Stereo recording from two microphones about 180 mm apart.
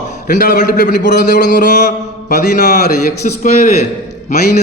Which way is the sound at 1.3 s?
45° left (ahead or behind).